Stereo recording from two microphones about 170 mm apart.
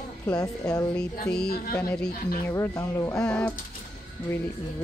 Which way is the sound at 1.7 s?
15° left (ahead or behind).